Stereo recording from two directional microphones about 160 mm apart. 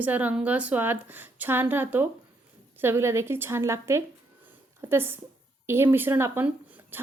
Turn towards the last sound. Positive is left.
turn(degrees=-15)  # may be behind; listen again after turning